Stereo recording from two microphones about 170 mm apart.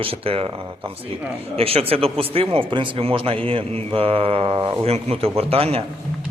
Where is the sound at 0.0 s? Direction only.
35° right (ahead or behind).